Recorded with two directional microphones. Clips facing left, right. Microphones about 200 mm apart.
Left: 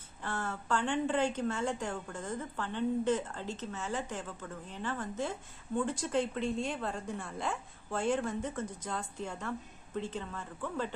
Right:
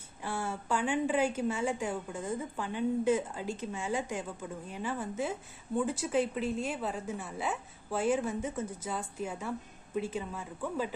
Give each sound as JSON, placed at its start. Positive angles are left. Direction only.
{"t": 0.2, "sound": "a woman's voice", "side_deg": -10}